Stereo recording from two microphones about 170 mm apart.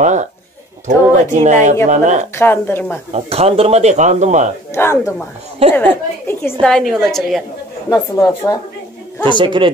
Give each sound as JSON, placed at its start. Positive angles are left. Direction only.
{"t": 0.0, "sound": "a sound", "side_deg": -45}
{"t": 0.8, "sound": "speech", "side_deg": -45}
{"t": 2.3, "sound": "speech", "side_deg": 10}
{"t": 3.1, "sound": "speech", "side_deg": -35}
{"t": 4.7, "sound": "speech", "side_deg": 15}
{"t": 5.6, "sound": "speech", "side_deg": -35}
{"t": 6.6, "sound": "a woman's voice", "side_deg": 5}
{"t": 7.9, "sound": "speech", "side_deg": 20}
{"t": 9.4, "sound": "speech", "side_deg": -25}